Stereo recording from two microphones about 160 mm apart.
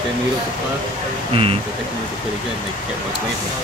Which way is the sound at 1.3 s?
35° right (ahead or behind).